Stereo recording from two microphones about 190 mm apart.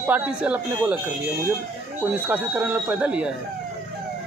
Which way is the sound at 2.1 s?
10° right (ahead or behind).